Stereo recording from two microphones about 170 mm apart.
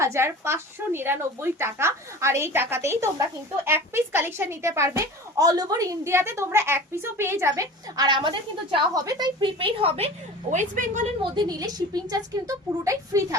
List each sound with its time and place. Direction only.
0.0 s a woman's voice: 15° right (ahead or behind); by 10.1 s 35° right (ahead or behind)
10.5 s a woman's voice: 45° right (ahead or behind)
11.2 s a woman's voice: 25° right (ahead or behind)